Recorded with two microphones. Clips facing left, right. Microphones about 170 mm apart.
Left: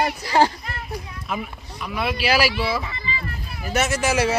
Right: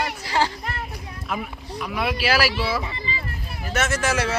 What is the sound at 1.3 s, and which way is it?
Speech, centre (ahead or behind).